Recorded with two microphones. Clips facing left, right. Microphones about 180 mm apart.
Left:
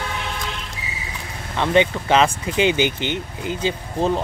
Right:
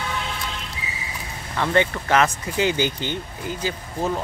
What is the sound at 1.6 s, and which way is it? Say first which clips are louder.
Speech: left 3 dB; 20° left (ahead or behind).